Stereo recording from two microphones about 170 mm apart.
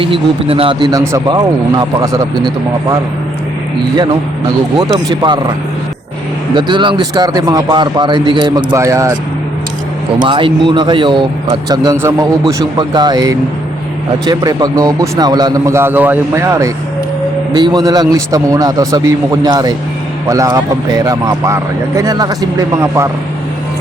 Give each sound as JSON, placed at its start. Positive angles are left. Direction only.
{"t": 0.0, "sound": "speech", "side_deg": -35}
{"t": 4.8, "sound": "speech", "side_deg": -25}
{"t": 6.5, "sound": "speech", "side_deg": -30}
{"t": 10.2, "sound": "speech", "side_deg": -30}